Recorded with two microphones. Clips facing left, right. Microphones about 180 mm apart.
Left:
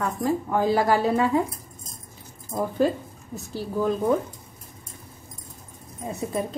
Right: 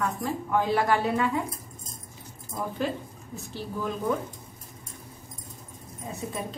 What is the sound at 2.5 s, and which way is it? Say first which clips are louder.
Speech: left 6 dB; 40° left (ahead or behind).